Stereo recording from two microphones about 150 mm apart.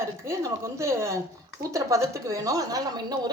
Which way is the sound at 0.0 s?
20° right (ahead or behind).